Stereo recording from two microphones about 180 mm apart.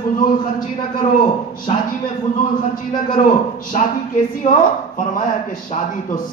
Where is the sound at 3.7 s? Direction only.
40° left (ahead or behind).